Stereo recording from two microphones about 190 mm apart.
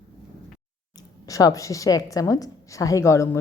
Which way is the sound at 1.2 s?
20° left (ahead or behind).